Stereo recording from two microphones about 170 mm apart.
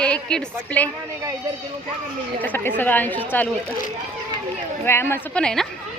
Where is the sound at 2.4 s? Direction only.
10° left (ahead or behind).